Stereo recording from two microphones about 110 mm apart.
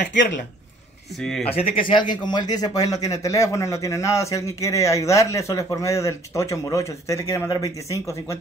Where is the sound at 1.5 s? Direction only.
50° left (ahead or behind).